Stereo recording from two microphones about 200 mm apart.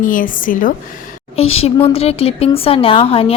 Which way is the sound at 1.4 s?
30° left (ahead or behind).